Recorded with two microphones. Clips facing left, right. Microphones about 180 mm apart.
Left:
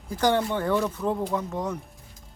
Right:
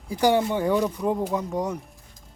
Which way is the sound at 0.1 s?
10° right (ahead or behind).